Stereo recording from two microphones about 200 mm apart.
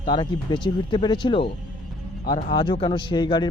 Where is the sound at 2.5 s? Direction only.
25° left (ahead or behind).